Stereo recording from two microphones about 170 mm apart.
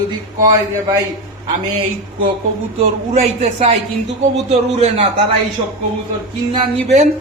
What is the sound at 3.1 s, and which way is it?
A man's voice, 35° right (ahead or behind).